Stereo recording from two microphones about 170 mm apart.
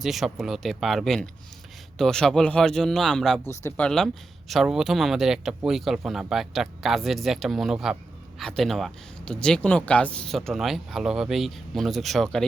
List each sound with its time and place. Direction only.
0.0 s speech: centre (ahead or behind)
3.4 s speech: 15° left (ahead or behind)